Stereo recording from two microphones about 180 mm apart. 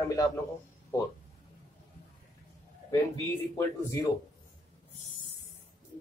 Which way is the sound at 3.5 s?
15° left (ahead or behind).